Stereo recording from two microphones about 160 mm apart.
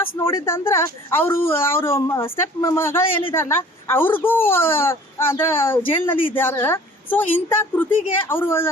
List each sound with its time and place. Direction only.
0.0 s speech: 15° left (ahead or behind)